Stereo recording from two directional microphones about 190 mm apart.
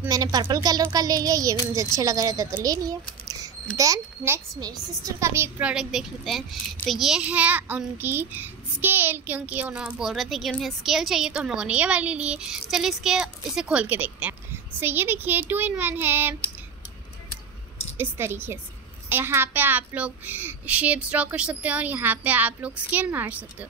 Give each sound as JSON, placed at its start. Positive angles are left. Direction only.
{"t": 0.0, "sound": "a child's voice", "side_deg": -20}
{"t": 17.9, "sound": "a child's voice", "side_deg": -10}